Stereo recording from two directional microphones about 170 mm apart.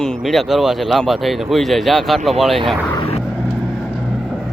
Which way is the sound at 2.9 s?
35° left (ahead or behind).